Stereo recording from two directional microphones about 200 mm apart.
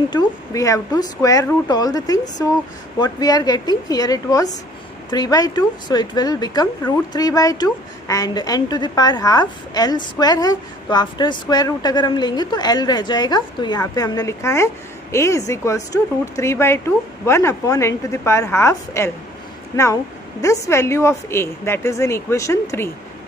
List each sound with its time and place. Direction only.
0.1 s a woman's voice: 15° left (ahead or behind)